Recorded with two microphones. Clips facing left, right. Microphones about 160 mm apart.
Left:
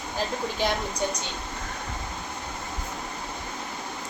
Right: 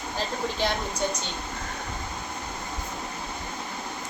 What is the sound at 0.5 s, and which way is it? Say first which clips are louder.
Speech: left 2 dB; 10° left (ahead or behind).